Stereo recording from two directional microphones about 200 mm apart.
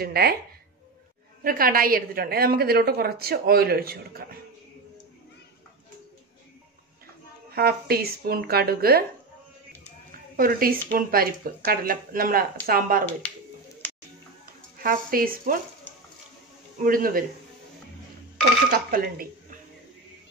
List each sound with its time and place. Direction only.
0.0 s a woman's voice: 50° right (ahead or behind)
1.4 s a woman's voice: 45° right (ahead or behind)
7.5 s a woman's voice: 50° right (ahead or behind)
10.3 s a woman's voice: 45° right (ahead or behind)
14.8 s a woman's voice: 45° right (ahead or behind)
16.8 s a woman's voice: 45° right (ahead or behind)
18.7 s a woman's voice: 45° right (ahead or behind)